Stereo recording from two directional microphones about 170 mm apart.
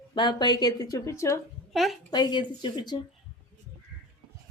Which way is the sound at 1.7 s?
Centre (ahead or behind).